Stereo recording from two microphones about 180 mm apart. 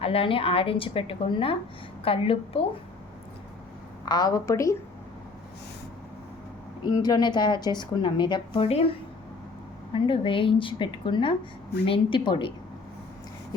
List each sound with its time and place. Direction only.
0.0 s a woman's voice: 30° left (ahead or behind)
4.1 s a woman's voice: 20° left (ahead or behind)
6.8 s a woman's voice: 20° left (ahead or behind)